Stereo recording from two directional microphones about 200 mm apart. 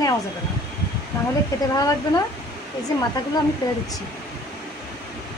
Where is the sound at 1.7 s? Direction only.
20° left (ahead or behind).